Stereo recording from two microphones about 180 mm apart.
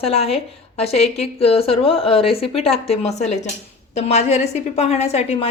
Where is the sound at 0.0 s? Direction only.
35° left (ahead or behind).